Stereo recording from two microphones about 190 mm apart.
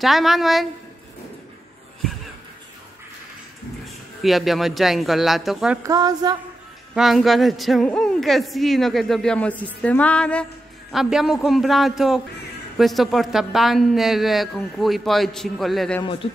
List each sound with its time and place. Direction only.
0.0 s speech: centre (ahead or behind)
3.8 s a man's voice: centre (ahead or behind)
5.8 s music: 20° right (ahead or behind)
6.9 s speech: centre (ahead or behind)
16.0 s a man's voice: 30° left (ahead or behind)